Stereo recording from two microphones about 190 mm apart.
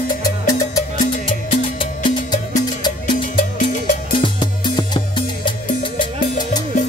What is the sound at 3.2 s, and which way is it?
Music, 45° left (ahead or behind).